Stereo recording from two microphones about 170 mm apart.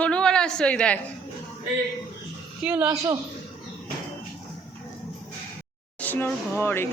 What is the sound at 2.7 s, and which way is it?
Speech, 10° right (ahead or behind).